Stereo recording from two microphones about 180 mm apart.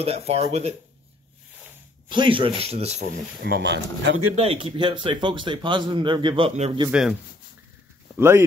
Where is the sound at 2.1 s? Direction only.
25° right (ahead or behind).